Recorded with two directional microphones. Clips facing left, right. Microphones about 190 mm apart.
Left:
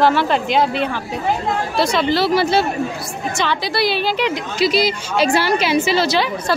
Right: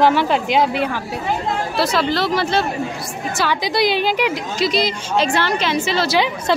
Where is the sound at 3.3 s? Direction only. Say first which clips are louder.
Right 1 dB; 15° right (ahead or behind).